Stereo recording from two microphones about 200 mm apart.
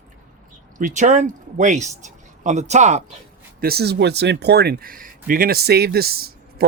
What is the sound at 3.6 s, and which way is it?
Speech, 50° right (ahead or behind).